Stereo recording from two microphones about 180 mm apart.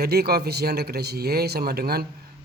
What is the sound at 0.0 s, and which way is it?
Speech, 60° right (ahead or behind).